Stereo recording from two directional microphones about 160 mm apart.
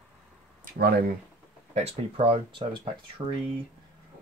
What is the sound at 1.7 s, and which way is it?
Speech, 40° right (ahead or behind).